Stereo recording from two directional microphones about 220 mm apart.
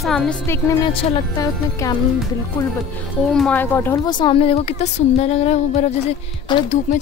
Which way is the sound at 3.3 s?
5° left (ahead or behind).